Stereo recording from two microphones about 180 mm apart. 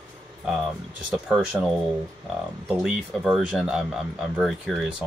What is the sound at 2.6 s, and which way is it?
Speech, centre (ahead or behind).